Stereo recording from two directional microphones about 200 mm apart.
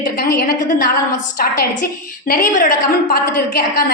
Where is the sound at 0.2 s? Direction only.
50° left (ahead or behind).